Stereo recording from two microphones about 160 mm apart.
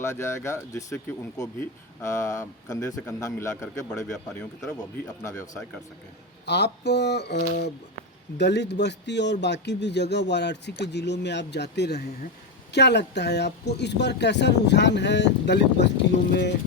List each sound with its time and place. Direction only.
0.0 s speech: 15° left (ahead or behind)
6.4 s a man's voice: 90° left